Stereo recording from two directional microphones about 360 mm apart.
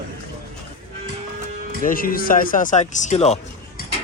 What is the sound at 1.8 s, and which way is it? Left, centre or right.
Speech, left.